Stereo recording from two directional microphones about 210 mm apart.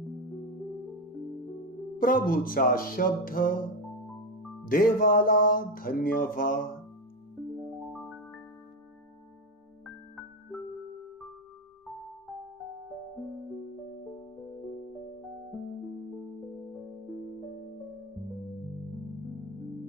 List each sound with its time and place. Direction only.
2.0 s music: 40° left (ahead or behind)
4.6 s music: 45° left (ahead or behind)
7.9 s music: 5° left (ahead or behind)